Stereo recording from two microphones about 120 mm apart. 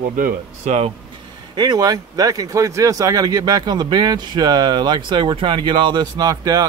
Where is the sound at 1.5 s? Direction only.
35° right (ahead or behind).